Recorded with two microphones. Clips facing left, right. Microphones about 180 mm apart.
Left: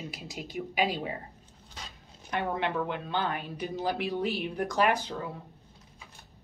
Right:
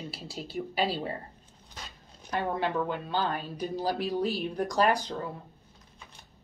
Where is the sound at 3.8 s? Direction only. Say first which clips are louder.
Right 1 dB; 40° right (ahead or behind).